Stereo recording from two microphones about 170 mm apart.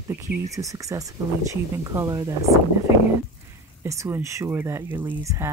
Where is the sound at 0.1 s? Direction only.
20° right (ahead or behind).